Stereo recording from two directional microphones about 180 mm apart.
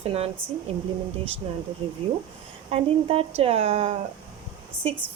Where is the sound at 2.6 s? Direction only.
30° right (ahead or behind).